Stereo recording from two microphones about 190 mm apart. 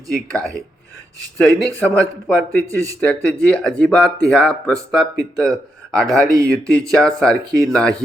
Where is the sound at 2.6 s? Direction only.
15° right (ahead or behind).